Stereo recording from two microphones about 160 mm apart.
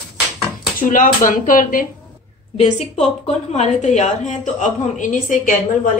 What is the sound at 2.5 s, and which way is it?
A woman's voice, 45° left (ahead or behind).